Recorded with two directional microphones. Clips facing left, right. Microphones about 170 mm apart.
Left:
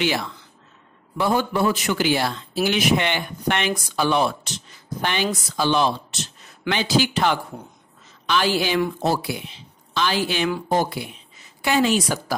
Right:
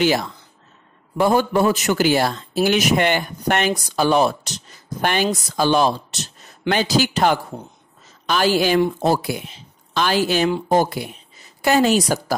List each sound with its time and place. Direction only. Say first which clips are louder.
0.0 s speech: right 5 dB; 40° right (ahead or behind)